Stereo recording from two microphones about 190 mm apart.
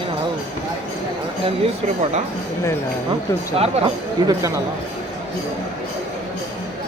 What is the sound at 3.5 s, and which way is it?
Speech, 30° right (ahead or behind).